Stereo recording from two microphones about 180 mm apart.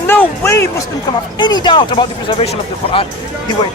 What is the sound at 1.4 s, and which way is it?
Speech, 25° left (ahead or behind).